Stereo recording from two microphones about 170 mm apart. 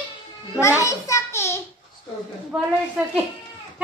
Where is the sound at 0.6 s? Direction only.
20° left (ahead or behind).